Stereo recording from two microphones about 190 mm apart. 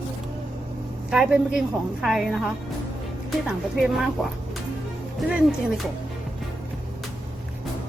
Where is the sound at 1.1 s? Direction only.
5° right (ahead or behind).